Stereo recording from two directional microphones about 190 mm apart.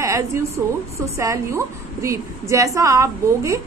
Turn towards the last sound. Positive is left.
turn(degrees=-15)  # may be behind; listen again after turning